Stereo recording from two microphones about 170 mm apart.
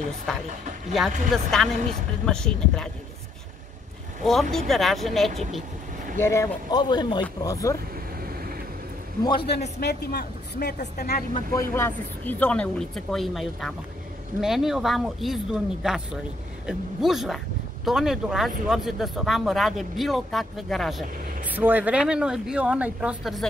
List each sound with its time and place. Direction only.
0.9 s speech: centre (ahead or behind)
4.3 s speech: centre (ahead or behind)
6.1 s speech: 15° left (ahead or behind)
9.2 s speech: 25° left (ahead or behind)
9.8 s speech: 70° left (ahead or behind)
11.3 s speech: 20° left (ahead or behind); by 21.0 s centre (ahead or behind)
21.5 s speech: 10° right (ahead or behind)